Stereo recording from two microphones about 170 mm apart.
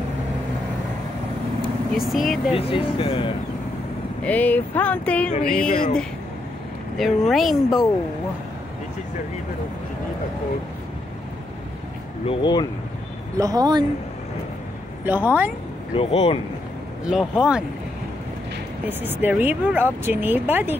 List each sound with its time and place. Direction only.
2.0 s speech: centre (ahead or behind)
2.5 s speech: 30° left (ahead or behind)
4.2 s speech: 10° left (ahead or behind)
5.7 s speech: 55° left (ahead or behind)
7.0 s speech: centre (ahead or behind)
12.3 s speech: 25° left (ahead or behind)
13.4 s speech: 20° right (ahead or behind)
15.0 s speech: 10° right (ahead or behind)
16.0 s speech: 35° left (ahead or behind)
17.0 s speech: 5° right (ahead or behind)
18.9 s speech: 10° right (ahead or behind)